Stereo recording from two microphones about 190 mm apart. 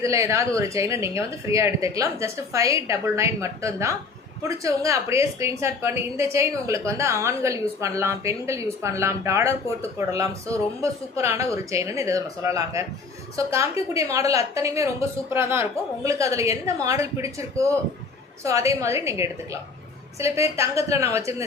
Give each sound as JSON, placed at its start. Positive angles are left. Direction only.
{"t": 0.0, "sound": "a woman's voice", "side_deg": -15}
{"t": 10.8, "sound": "a woman's voice", "side_deg": -15}